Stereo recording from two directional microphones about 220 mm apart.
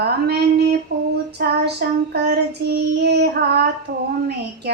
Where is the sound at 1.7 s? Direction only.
50° right (ahead or behind).